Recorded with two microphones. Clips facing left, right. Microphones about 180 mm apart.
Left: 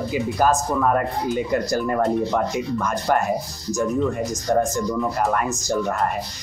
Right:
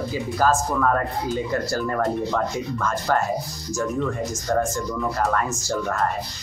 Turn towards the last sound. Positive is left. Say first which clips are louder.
# left 2 dB
turn(degrees=15)  # may be behind; listen again after turning